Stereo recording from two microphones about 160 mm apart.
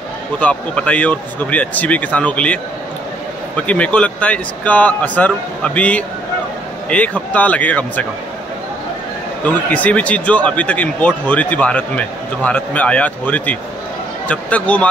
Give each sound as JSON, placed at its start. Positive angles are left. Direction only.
{"t": 0.4, "sound": "speech", "side_deg": 5}
{"t": 3.6, "sound": "speech", "side_deg": 10}
{"t": 9.5, "sound": "speech", "side_deg": 10}